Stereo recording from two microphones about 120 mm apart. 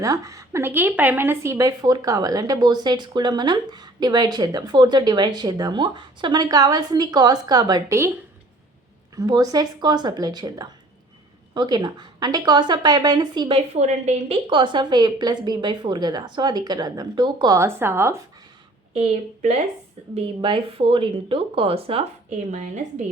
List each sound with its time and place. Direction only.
0.0 s a woman's voice: 30° right (ahead or behind)
9.1 s a woman's voice: 30° right (ahead or behind)
13.6 s a woman's voice: 65° right (ahead or behind)
14.5 s a woman's voice: 45° right (ahead or behind); by 18.2 s 20° right (ahead or behind)
18.9 s a woman's voice: 65° right (ahead or behind)
20.4 s speech: 50° right (ahead or behind)
22.5 s a woman's voice: 90° right